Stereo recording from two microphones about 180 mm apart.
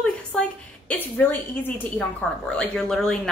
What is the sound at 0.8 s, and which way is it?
A woman's voice, 10° left (ahead or behind).